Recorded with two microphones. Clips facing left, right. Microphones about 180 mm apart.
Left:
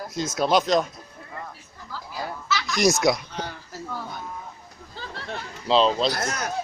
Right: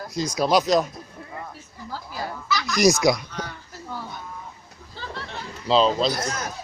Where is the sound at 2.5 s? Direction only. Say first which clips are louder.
Right 2 dB; centre (ahead or behind).